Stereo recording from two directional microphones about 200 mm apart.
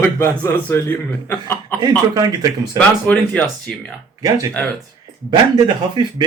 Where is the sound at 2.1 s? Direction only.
15° right (ahead or behind).